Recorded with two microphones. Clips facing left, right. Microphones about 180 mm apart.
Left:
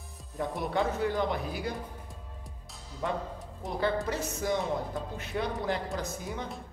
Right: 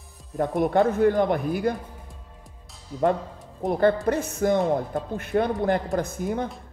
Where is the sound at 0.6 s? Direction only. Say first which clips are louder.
Right 10 dB; 50° right (ahead or behind).